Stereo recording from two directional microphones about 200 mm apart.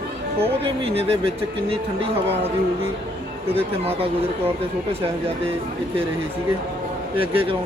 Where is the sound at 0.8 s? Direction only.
30° right (ahead or behind).